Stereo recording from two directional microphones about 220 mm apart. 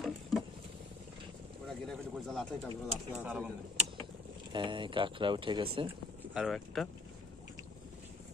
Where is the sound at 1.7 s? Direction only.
Centre (ahead or behind).